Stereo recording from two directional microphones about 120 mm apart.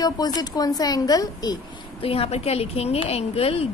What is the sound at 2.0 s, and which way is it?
A woman's voice, 55° left (ahead or behind).